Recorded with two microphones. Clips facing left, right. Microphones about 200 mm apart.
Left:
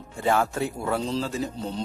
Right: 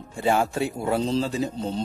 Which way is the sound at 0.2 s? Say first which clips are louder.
Right 1 dB; 15° right (ahead or behind).